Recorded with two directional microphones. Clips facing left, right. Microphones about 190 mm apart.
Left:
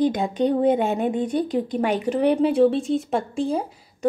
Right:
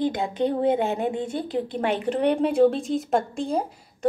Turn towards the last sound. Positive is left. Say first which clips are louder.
# left 1 dB
turn(degrees=5)  # may be behind; listen again after turning